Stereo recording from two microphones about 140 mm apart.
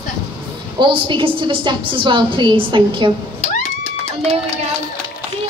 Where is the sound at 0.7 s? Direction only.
35° right (ahead or behind).